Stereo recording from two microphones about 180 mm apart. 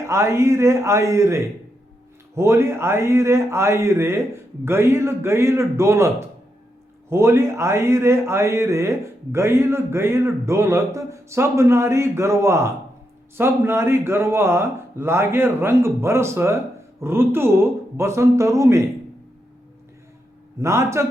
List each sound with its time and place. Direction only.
0.0 s a man's voice: 15° right (ahead or behind)
20.6 s a man's voice: 15° right (ahead or behind)